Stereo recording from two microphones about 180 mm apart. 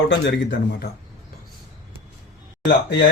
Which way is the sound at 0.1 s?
75° left (ahead or behind).